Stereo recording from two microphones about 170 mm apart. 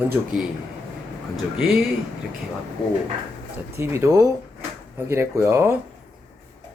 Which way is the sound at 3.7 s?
15° right (ahead or behind).